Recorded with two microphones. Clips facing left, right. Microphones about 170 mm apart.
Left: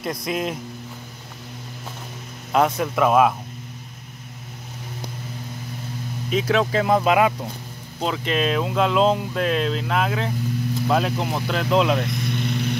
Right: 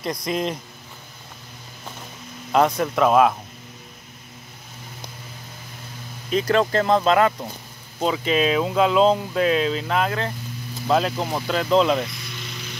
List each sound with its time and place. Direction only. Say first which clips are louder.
0.0 s speech: right 1 dB; 5° left (ahead or behind)
2.5 s speech: right 1 dB; centre (ahead or behind)
6.3 s speech: right 1 dB; centre (ahead or behind)
8.0 s speech: right 2 dB; centre (ahead or behind)
12.1 s vehicle: left 12 dB; 55° left (ahead or behind)